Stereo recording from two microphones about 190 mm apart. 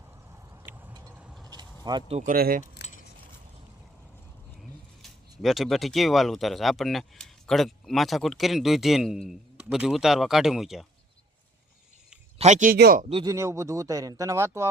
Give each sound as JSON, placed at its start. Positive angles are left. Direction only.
{"t": 0.5, "sound": "vehicle", "side_deg": -10}
{"t": 1.8, "sound": "speech", "side_deg": -25}
{"t": 2.3, "sound": "speech", "side_deg": -50}
{"t": 5.4, "sound": "speech", "side_deg": 0}
{"t": 12.4, "sound": "speech", "side_deg": -40}
{"t": 13.2, "sound": "speech", "side_deg": -15}